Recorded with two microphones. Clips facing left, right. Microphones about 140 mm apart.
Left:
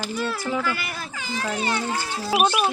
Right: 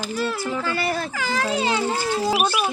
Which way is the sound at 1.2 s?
90° right.